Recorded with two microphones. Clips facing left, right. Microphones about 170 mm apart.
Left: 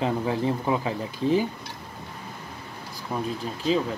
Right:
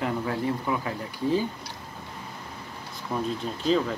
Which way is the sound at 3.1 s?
10° left (ahead or behind).